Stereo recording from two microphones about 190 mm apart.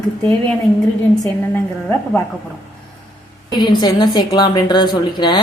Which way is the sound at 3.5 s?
25° left (ahead or behind).